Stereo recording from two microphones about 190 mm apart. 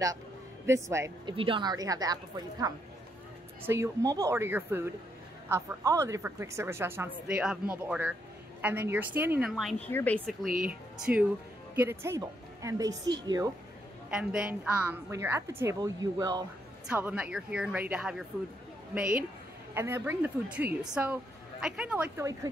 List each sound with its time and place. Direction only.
0.7 s a woman's voice: 15° right (ahead or behind)
1.3 s a woman's voice: 30° right (ahead or behind); by 10.5 s 5° left (ahead or behind)
10.7 s speech: 5° right (ahead or behind)
14.1 s a woman's voice: 5° right (ahead or behind); by 16.4 s 20° right (ahead or behind)
16.9 s a woman's voice: 5° right (ahead or behind)
19.7 s a woman's voice: 10° right (ahead or behind)